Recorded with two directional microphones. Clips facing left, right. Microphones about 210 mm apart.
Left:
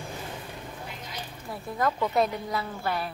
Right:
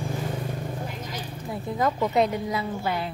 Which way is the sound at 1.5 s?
20° right (ahead or behind).